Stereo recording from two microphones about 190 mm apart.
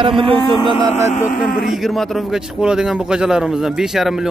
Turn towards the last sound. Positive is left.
turn(degrees=0)  # may be behind; listen again after turning